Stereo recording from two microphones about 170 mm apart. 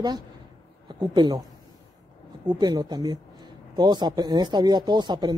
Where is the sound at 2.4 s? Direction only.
25° right (ahead or behind).